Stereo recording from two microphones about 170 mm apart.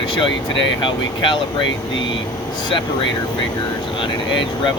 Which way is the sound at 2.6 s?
30° left (ahead or behind).